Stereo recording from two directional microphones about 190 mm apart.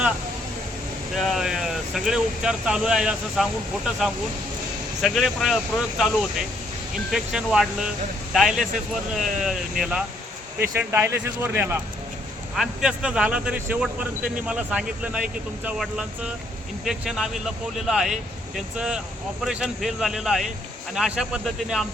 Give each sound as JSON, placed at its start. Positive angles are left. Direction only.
{"t": 1.1, "sound": "speech", "side_deg": 0}
{"t": 7.1, "sound": "speech", "side_deg": -5}
{"t": 10.6, "sound": "speech", "side_deg": -10}